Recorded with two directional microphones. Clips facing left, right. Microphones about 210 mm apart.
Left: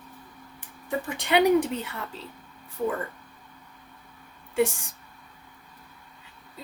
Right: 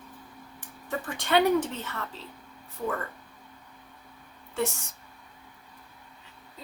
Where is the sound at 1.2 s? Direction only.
15° left (ahead or behind).